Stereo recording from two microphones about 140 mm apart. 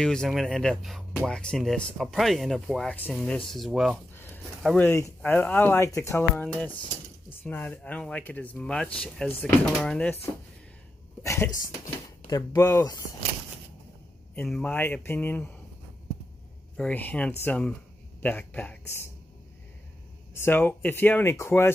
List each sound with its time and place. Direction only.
0.0 s speech: 5° left (ahead or behind)
4.7 s speech: 20° left (ahead or behind)
6.3 s speech: 5° left (ahead or behind)
11.2 s speech: 20° left (ahead or behind)
14.3 s speech: 10° left (ahead or behind)
16.7 s speech: 10° left (ahead or behind)
20.3 s speech: 15° left (ahead or behind)